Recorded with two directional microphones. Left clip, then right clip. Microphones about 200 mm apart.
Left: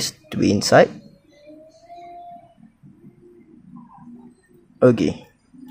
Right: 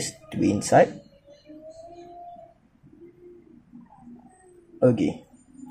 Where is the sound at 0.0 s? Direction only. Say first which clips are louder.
Left 4 dB; 25° left (ahead or behind).